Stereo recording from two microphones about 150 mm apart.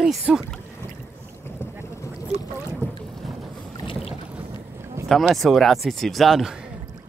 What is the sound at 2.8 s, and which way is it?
Boat, 15° left (ahead or behind).